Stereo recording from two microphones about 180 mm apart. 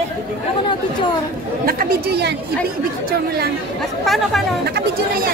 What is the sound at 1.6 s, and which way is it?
Speech, 55° right (ahead or behind).